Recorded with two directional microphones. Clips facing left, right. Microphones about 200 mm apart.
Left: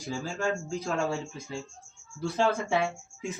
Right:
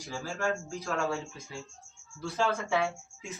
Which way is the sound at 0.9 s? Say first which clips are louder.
Left 1 dB; 25° left (ahead or behind).